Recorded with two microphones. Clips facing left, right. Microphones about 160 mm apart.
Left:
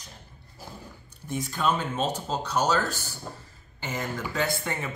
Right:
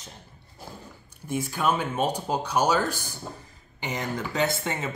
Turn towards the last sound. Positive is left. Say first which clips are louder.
# right 1 dB
turn(degrees=-20)  # may be behind; listen again after turning